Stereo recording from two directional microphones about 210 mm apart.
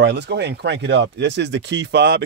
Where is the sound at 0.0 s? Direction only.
55° right (ahead or behind).